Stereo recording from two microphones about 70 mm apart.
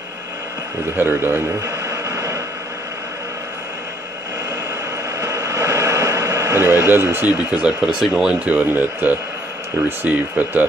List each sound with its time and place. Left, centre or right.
0.9 s speech: right
1.6 s vehicle: right
5.2 s a sound: right
6.9 s speech: right
7.2 s speech: centre